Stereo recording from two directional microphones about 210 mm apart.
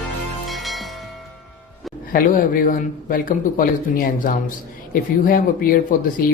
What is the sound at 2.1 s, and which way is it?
Speech, 40° left (ahead or behind).